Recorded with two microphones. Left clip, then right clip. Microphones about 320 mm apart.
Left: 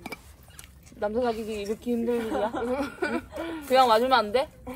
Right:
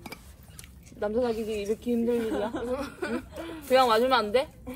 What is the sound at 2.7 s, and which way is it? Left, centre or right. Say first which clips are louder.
Speech: left 3 dB; left.